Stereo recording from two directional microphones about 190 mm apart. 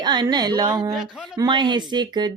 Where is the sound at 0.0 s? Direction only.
25° right (ahead or behind).